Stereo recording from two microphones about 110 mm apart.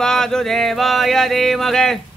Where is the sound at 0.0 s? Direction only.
5° left (ahead or behind).